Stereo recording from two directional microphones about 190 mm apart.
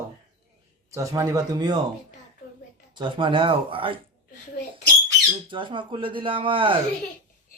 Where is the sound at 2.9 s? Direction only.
25° right (ahead or behind).